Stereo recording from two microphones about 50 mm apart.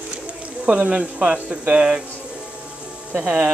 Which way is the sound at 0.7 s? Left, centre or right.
Right.